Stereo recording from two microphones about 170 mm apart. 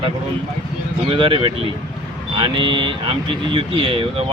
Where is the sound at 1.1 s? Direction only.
30° right (ahead or behind).